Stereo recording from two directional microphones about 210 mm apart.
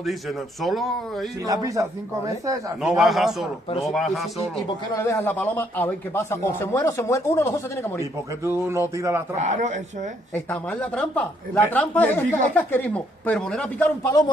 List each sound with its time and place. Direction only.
0.6 s a man's voice: centre (ahead or behind)
1.4 s speech: 15° right (ahead or behind)
2.8 s a man's voice: centre (ahead or behind)
4.9 s a man's voice: 10° left (ahead or behind)
8.0 s speech: 10° right (ahead or behind)
9.4 s a man's voice: 35° right (ahead or behind)
10.3 s a man's voice: 5° left (ahead or behind)